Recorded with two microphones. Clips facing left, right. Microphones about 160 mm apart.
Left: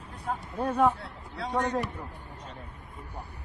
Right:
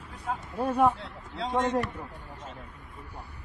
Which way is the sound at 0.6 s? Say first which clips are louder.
Right 1 dB; 10° right (ahead or behind).